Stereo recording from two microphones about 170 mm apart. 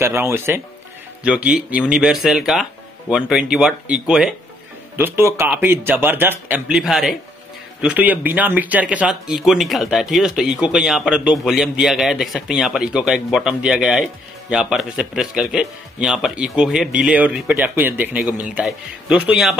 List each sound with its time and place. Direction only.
0.0 s speech: 15° right (ahead or behind)